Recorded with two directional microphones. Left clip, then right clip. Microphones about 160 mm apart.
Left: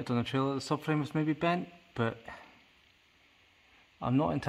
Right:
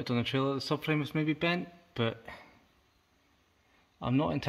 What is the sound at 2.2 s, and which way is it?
Speech, 10° right (ahead or behind).